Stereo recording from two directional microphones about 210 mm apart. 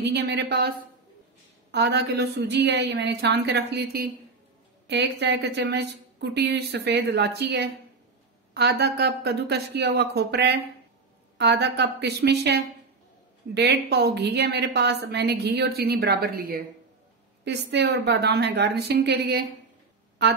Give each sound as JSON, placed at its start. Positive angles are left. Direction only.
{"t": 0.0, "sound": "a woman's voice", "side_deg": -55}